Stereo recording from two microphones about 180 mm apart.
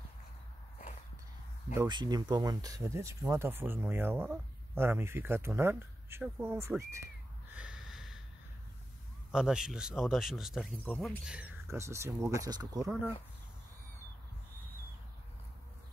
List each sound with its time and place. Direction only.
1.9 s speech: 25° right (ahead or behind)
7.4 s snort: 5° right (ahead or behind)
9.3 s speech: 5° right (ahead or behind)
11.6 s speech: 15° right (ahead or behind)